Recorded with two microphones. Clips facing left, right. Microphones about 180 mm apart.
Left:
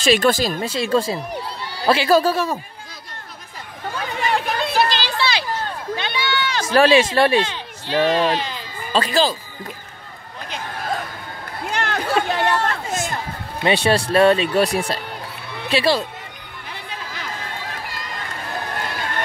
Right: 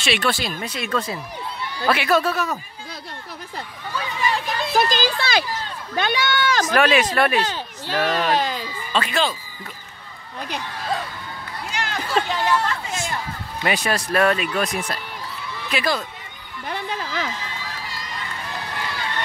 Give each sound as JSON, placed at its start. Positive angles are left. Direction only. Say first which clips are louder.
{"t": 0.0, "sound": "speech", "louder": "left 6 dB", "side_deg": 40}
{"t": 3.8, "sound": "chatter", "louder": "left 1 dB", "side_deg": 50}
{"t": 4.7, "sound": "a sound", "louder": "right 2 dB", "side_deg": -45}
{"t": 5.9, "sound": "speech", "louder": "right 5 dB", "side_deg": -45}
{"t": 6.6, "sound": "speech", "louder": "left 5 dB", "side_deg": 30}
{"t": 7.4, "sound": "speech", "louder": "right 2 dB", "side_deg": -45}
{"t": 8.9, "sound": "speech", "louder": "left 4 dB", "side_deg": 35}
{"t": 10.6, "sound": "speech", "louder": "left 3 dB", "side_deg": 50}
{"t": 13.7, "sound": "speech", "louder": "left 5 dB", "side_deg": 30}
{"t": 16.6, "sound": "music", "louder": "right 7 dB", "side_deg": -55}
{"t": 17.4, "sound": "run", "louder": "left 2 dB", "side_deg": 50}